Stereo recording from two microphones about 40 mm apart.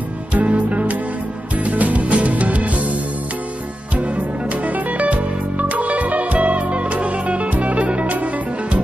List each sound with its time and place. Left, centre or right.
0.3 s music: right
3.9 s music: right